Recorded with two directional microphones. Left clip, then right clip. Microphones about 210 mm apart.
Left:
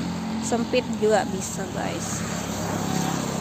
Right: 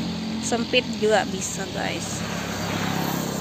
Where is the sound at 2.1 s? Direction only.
15° left (ahead or behind).